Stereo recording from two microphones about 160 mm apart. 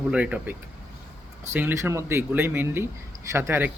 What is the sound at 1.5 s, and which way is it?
Speech, 15° right (ahead or behind).